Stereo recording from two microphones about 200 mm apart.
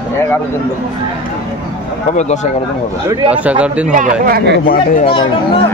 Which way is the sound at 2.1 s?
35° left (ahead or behind).